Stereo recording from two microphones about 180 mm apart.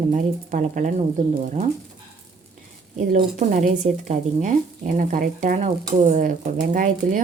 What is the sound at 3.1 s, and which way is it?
Speech, 45° right (ahead or behind).